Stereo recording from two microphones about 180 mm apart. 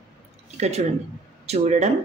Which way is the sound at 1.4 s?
35° right (ahead or behind).